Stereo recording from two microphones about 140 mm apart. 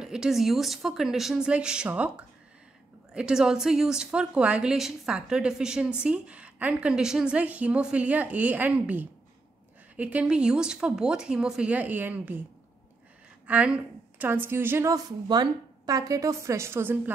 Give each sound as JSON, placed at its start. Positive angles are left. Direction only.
{"t": 0.0, "sound": "a woman's voice", "side_deg": -5}
{"t": 13.5, "sound": "a woman's voice", "side_deg": -10}
{"t": 15.2, "sound": "a woman's voice", "side_deg": -30}